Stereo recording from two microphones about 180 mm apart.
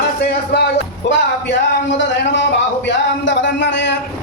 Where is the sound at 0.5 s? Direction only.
75° left (ahead or behind).